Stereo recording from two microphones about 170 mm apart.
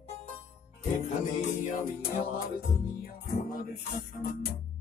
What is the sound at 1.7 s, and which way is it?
Music, 55° left (ahead or behind).